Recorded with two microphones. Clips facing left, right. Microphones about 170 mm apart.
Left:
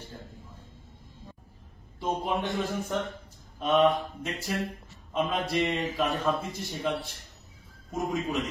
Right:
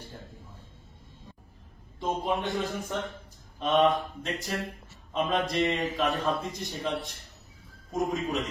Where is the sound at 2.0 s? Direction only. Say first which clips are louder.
Even; centre (ahead or behind).